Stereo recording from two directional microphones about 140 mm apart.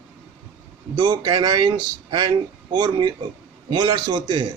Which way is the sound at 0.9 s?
35° right (ahead or behind).